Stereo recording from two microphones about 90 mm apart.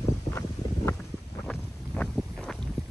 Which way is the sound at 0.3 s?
35° left (ahead or behind).